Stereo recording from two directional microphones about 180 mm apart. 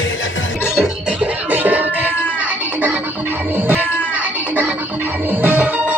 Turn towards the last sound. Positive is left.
turn(degrees=-10)  # may be behind; listen again after turning